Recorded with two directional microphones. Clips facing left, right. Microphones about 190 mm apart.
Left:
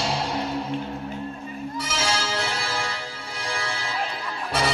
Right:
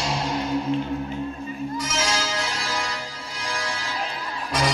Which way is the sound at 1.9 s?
30° left (ahead or behind).